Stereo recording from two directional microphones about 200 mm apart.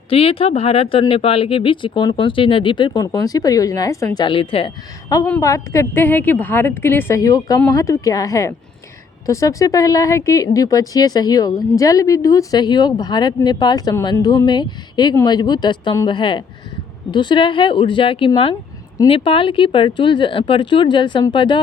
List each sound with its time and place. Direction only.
0.1 s speech: 30° left (ahead or behind)